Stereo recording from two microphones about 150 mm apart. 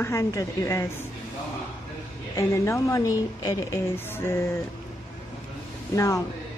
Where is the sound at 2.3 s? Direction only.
20° left (ahead or behind).